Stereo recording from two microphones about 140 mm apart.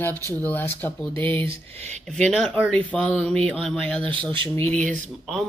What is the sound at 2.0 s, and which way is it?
Speech, 5° left (ahead or behind).